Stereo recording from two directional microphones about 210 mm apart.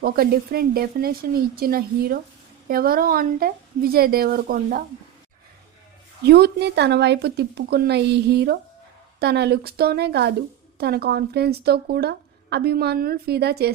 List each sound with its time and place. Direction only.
0.0 s speech: 45° right (ahead or behind)
6.2 s speech: 50° right (ahead or behind)